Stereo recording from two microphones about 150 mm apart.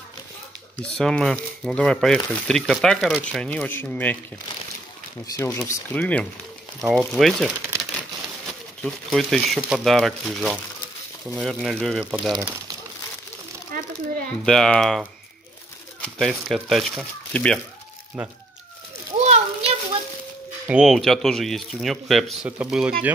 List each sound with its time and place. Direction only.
0.7 s speech: 5° left (ahead or behind)
5.2 s speech: 20° left (ahead or behind)
5.7 s speech: 10° left (ahead or behind)
8.8 s speech: centre (ahead or behind)
12.3 s speech: 25° right (ahead or behind)
14.4 s speech: 5° left (ahead or behind)
19.1 s a sound: 45° right (ahead or behind)
20.6 s speech: 5° right (ahead or behind)